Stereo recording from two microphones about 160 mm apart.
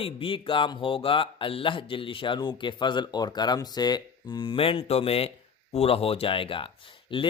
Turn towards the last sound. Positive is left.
turn(degrees=35)  # may be behind; listen again after turning